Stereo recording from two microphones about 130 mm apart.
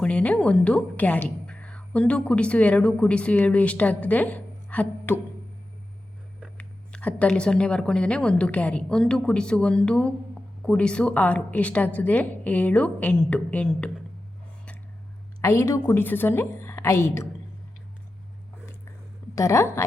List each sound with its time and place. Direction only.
0.0 s a woman's voice: 10° left (ahead or behind)
6.6 s a woman's voice: 10° left (ahead or behind)
15.4 s a woman's voice: 20° left (ahead or behind)
19.4 s a woman's voice: 20° left (ahead or behind)